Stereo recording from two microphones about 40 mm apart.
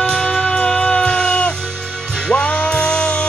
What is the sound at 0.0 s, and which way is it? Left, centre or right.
Music, centre.